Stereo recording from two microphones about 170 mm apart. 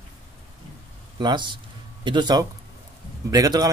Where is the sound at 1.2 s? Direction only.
25° right (ahead or behind).